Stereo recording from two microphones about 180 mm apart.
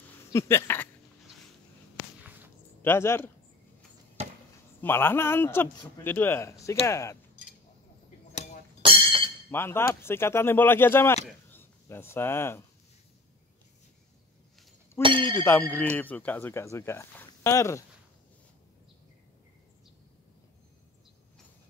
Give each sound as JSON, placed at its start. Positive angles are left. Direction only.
{"t": 0.3, "sound": "a man's voice", "side_deg": 15}
{"t": 2.8, "sound": "a man's voice", "side_deg": 15}
{"t": 4.2, "sound": "chop", "side_deg": -35}
{"t": 4.8, "sound": "a man's voice", "side_deg": 10}
{"t": 9.5, "sound": "a man's voice", "side_deg": 15}
{"t": 15.0, "sound": "speech", "side_deg": -25}
{"t": 15.3, "sound": "a man's voice", "side_deg": 10}